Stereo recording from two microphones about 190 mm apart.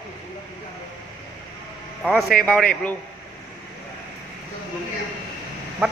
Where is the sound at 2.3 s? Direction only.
5° left (ahead or behind).